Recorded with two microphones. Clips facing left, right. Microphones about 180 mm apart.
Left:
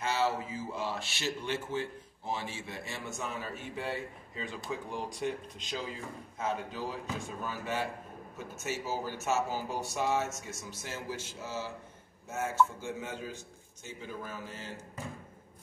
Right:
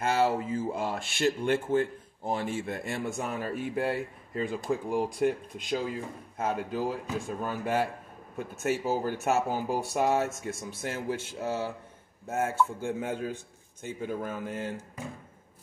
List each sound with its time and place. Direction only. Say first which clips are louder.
0.0 s mantra: right 5 dB; 55° right (ahead or behind)
0.5 s speech: right 6 dB; 50° right (ahead or behind)